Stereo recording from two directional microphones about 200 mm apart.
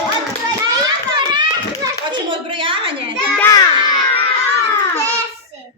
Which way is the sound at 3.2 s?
10° left (ahead or behind).